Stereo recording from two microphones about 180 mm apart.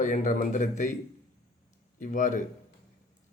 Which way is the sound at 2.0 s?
45° left (ahead or behind).